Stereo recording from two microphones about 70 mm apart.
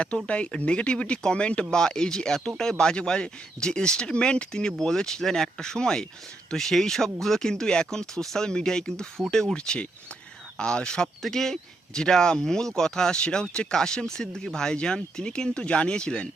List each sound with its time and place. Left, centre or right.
0.3 s speech: centre